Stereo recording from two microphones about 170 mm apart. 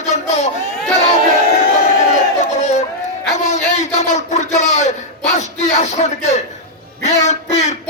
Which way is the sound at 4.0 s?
45° left (ahead or behind).